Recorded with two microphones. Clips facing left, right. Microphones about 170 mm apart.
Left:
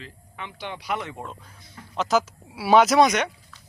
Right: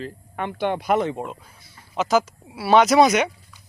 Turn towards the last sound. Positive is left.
turn(degrees=-5)  # may be behind; listen again after turning